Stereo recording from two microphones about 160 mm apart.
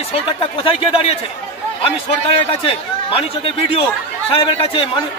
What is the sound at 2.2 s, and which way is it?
A man's voice, 35° left (ahead or behind).